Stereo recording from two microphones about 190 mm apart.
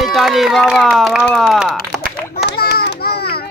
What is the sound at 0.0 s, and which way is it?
Speech, centre (ahead or behind).